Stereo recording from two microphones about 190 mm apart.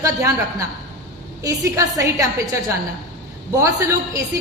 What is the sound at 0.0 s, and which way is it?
Speech, 15° right (ahead or behind).